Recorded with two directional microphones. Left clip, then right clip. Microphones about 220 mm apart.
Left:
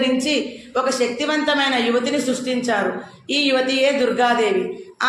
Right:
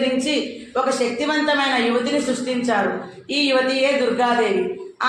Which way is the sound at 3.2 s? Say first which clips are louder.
Even; 50° left (ahead or behind).